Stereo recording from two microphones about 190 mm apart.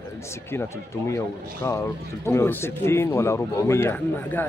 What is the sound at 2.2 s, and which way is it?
Speech, 15° left (ahead or behind).